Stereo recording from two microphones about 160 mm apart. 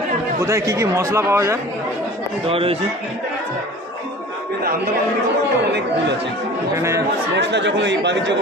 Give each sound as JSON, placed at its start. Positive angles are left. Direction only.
{"t": 0.3, "sound": "speech", "side_deg": -20}
{"t": 2.5, "sound": "speech", "side_deg": -35}
{"t": 6.7, "sound": "speech", "side_deg": -20}
{"t": 7.3, "sound": "speech", "side_deg": -90}